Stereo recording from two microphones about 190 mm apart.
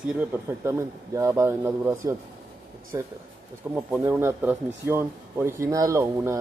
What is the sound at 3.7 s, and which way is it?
Speech, 5° right (ahead or behind).